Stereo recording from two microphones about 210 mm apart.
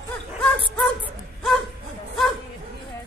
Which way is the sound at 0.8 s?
Centre (ahead or behind).